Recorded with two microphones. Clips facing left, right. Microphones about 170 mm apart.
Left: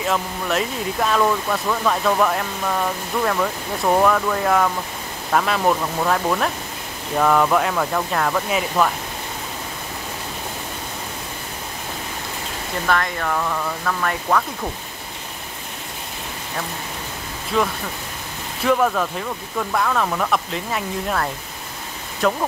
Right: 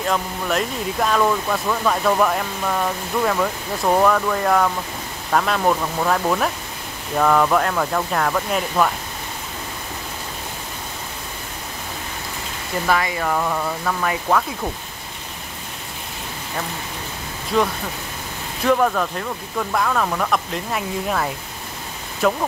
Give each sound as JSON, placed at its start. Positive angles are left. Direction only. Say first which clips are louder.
{"t": 0.0, "sound": "speech", "louder": "even", "side_deg": 0}
{"t": 12.8, "sound": "speech", "louder": "right 1 dB", "side_deg": -5}
{"t": 17.5, "sound": "speech", "louder": "right 1 dB", "side_deg": 0}